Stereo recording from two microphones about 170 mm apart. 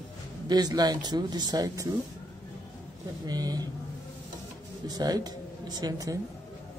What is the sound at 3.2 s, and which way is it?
Speech, 25° right (ahead or behind).